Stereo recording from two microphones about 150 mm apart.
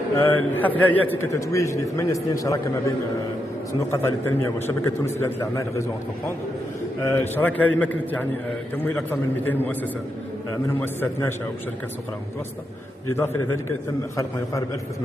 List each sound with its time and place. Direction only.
0.1 s a man's voice: 15° left (ahead or behind)
3.9 s a man's voice: 15° left (ahead or behind)
7.1 s a man's voice: 15° left (ahead or behind)
10.8 s a man's voice: 15° left (ahead or behind)
13.1 s a man's voice: 15° left (ahead or behind)